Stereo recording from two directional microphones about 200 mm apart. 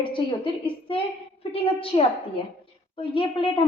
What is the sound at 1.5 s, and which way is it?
A woman's voice, 30° left (ahead or behind).